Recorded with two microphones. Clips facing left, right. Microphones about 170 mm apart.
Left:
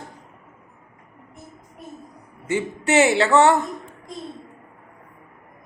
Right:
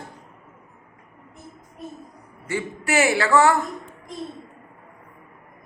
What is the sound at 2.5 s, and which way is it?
A woman's voice, 20° left (ahead or behind).